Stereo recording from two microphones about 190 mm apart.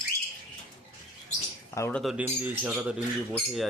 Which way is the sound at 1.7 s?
15° left (ahead or behind).